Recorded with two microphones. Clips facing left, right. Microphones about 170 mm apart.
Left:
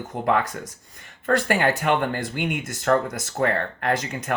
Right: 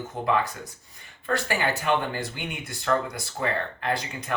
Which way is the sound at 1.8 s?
55° left (ahead or behind).